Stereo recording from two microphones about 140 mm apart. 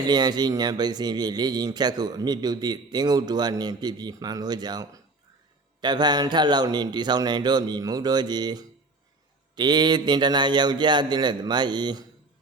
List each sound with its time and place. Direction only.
0.0 s a man's voice: 30° right (ahead or behind)